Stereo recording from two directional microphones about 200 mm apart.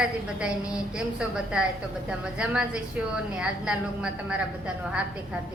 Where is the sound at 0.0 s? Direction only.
5° right (ahead or behind).